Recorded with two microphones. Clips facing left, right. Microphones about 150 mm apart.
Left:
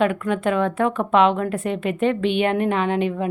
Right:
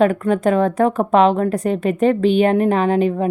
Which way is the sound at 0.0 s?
40° right (ahead or behind).